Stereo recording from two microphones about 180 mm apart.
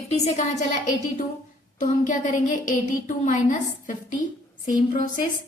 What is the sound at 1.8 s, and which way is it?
A woman's voice, 45° left (ahead or behind).